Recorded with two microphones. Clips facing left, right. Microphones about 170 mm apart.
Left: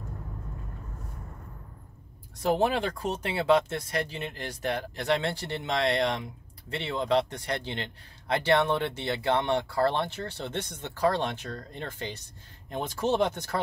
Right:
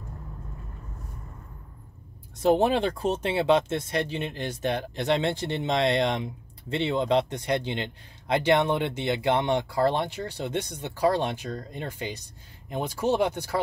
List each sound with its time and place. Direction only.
2.4 s speech: 20° right (ahead or behind)